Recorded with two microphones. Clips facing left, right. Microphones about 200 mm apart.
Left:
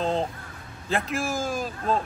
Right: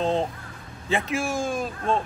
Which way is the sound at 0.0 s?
Centre (ahead or behind).